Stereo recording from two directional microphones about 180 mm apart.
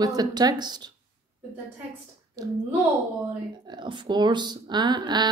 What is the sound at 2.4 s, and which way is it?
Speech, 20° right (ahead or behind).